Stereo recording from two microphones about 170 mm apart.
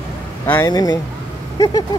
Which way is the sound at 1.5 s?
20° left (ahead or behind).